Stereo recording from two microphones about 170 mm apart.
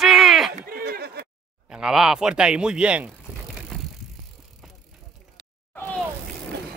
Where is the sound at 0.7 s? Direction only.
60° right (ahead or behind).